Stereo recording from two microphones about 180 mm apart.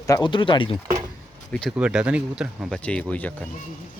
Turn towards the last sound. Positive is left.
turn(degrees=5)  # may be behind; listen again after turning